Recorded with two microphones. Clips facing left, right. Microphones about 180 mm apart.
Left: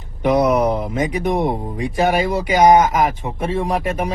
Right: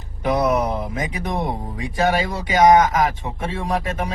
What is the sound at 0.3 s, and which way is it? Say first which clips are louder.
Speech: left 4 dB; 25° left (ahead or behind).